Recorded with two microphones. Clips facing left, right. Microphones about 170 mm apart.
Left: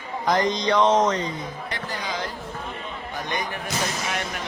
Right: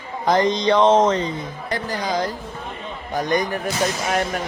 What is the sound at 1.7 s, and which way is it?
Speech, 40° right (ahead or behind).